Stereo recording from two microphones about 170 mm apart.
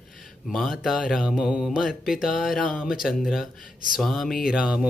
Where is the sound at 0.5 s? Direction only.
Centre (ahead or behind).